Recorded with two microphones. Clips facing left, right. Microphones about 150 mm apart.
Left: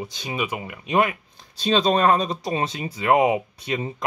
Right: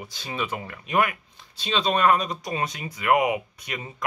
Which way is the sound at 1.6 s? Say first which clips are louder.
Left 4 dB; 40° left (ahead or behind).